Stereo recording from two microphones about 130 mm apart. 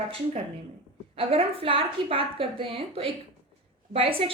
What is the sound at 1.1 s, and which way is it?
A woman's voice, 45° right (ahead or behind).